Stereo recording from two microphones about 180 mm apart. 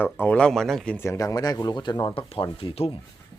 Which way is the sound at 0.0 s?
10° left (ahead or behind).